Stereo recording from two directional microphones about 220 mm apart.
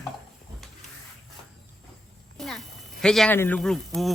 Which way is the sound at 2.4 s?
Centre (ahead or behind).